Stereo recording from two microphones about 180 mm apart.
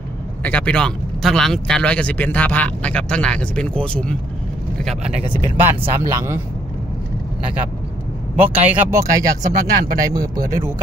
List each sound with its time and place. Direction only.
0.4 s speech: 10° left (ahead or behind)
5.4 s speech: 15° right (ahead or behind)
8.4 s speech: 15° right (ahead or behind)